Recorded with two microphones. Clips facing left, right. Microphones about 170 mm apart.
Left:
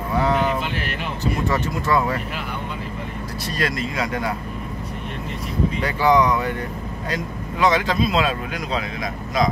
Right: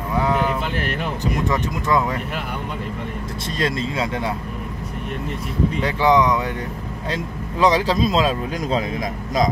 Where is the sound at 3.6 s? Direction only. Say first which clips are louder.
Right 2 dB; 25° right (ahead or behind).